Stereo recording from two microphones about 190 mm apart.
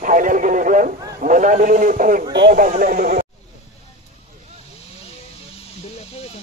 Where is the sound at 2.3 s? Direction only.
50° right (ahead or behind).